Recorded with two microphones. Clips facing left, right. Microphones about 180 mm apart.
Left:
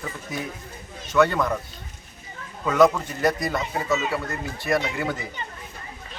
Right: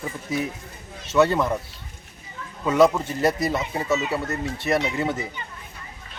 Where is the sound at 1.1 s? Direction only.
25° right (ahead or behind).